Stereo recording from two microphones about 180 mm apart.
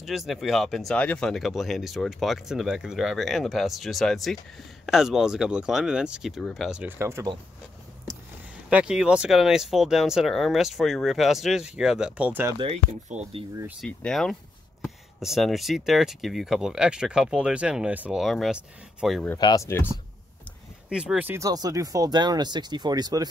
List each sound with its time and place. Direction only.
0.0 s speech: centre (ahead or behind)
8.6 s speech: 5° right (ahead or behind)
12.5 s speech: 35° right (ahead or behind)
13.7 s speech: 5° left (ahead or behind)
19.3 s speech: 20° left (ahead or behind)
20.9 s speech: 5° right (ahead or behind); by 23.2 s 20° right (ahead or behind)